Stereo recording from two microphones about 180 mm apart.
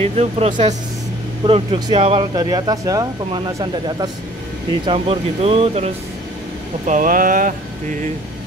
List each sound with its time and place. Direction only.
0.2 s speech: 30° right (ahead or behind)
6.9 s mantra: 50° right (ahead or behind)